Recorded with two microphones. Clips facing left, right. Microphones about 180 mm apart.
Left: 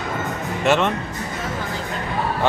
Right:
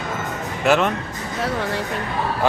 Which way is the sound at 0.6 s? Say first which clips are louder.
Right 1 dB; centre (ahead or behind).